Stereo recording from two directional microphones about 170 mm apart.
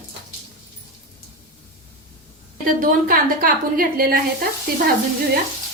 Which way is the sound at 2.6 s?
55° right (ahead or behind).